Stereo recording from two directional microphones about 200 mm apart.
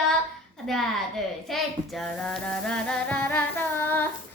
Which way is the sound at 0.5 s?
Centre (ahead or behind).